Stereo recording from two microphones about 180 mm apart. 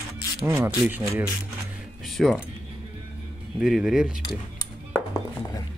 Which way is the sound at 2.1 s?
Centre (ahead or behind).